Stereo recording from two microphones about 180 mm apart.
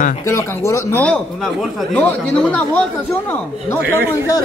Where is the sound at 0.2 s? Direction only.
15° left (ahead or behind).